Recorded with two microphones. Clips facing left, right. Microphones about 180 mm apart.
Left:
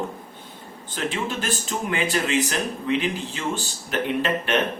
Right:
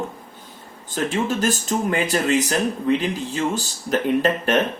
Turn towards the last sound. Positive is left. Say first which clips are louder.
# right 4 dB
turn(degrees=-40)  # may be behind; listen again after turning